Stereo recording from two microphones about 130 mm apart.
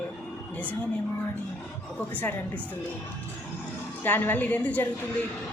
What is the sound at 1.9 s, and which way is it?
Speech, 10° left (ahead or behind).